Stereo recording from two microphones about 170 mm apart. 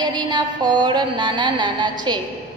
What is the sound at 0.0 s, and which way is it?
A woman's voice, 25° right (ahead or behind).